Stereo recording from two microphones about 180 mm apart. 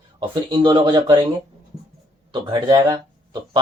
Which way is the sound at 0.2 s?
25° right (ahead or behind).